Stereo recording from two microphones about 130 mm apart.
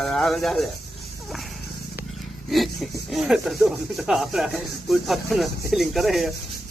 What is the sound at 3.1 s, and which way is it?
Speech, centre (ahead or behind).